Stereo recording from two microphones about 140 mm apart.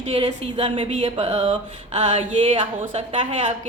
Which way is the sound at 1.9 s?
55° right (ahead or behind).